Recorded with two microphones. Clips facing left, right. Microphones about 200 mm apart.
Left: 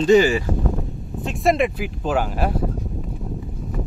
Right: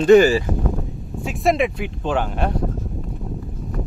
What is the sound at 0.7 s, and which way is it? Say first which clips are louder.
Speech: even; centre (ahead or behind).